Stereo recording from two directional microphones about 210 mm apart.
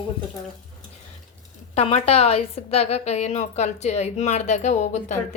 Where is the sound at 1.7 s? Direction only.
30° left (ahead or behind).